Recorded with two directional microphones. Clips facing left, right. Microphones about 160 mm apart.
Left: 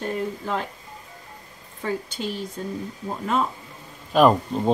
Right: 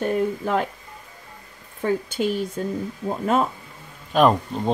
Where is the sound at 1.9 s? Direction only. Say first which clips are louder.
Right 6 dB; 55° right (ahead or behind).